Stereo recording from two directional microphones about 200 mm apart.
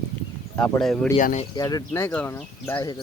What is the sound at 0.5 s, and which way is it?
Speech, 5° left (ahead or behind).